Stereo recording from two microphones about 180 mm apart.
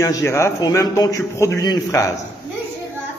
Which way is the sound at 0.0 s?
15° left (ahead or behind).